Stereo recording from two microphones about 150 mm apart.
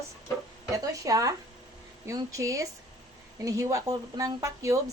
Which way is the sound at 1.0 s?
25° right (ahead or behind).